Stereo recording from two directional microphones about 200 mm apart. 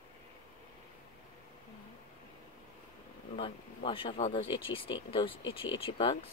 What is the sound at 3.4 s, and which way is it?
Speech, 25° left (ahead or behind).